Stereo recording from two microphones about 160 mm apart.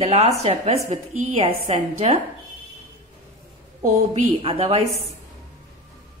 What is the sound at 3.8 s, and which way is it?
Speech, 45° right (ahead or behind).